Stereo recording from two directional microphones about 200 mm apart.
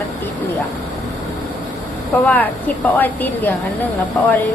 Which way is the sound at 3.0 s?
10° left (ahead or behind).